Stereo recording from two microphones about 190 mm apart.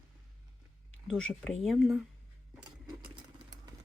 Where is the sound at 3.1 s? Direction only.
20° right (ahead or behind).